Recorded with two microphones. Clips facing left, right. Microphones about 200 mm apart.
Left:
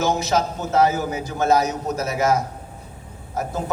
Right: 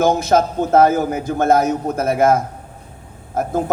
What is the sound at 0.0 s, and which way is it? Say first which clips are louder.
A man's voice: right 6 dB; 55° right (ahead or behind).